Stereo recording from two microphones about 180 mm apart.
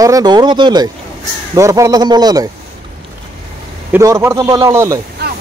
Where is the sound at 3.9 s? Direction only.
15° right (ahead or behind).